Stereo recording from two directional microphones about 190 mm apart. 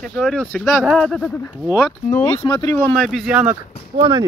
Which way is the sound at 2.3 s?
25° left (ahead or behind).